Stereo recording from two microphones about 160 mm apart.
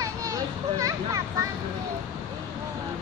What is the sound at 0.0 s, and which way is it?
Children playing, 20° right (ahead or behind).